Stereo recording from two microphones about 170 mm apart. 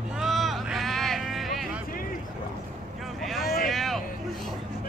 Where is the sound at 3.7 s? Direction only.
Centre (ahead or behind).